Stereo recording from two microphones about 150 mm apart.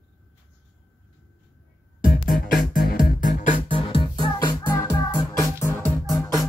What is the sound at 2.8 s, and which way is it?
Music, 90° left.